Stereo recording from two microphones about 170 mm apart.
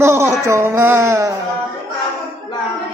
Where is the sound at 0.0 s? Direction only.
15° right (ahead or behind).